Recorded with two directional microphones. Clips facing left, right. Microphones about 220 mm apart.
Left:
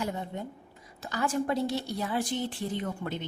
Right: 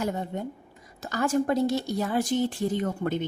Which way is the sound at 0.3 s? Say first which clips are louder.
Right 5 dB; 45° right (ahead or behind).